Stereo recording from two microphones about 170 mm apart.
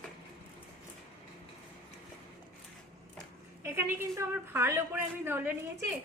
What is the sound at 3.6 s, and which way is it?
A woman's voice, 15° right (ahead or behind).